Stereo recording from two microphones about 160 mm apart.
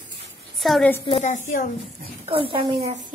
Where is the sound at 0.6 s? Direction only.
Centre (ahead or behind).